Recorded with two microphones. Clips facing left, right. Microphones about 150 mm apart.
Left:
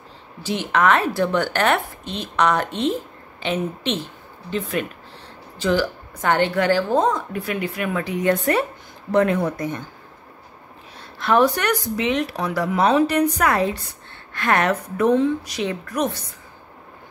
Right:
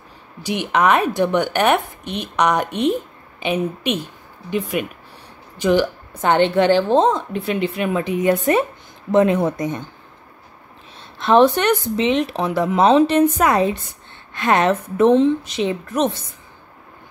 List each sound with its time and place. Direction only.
0.4 s a woman's voice: 15° right (ahead or behind)
11.1 s a woman's voice: 25° right (ahead or behind)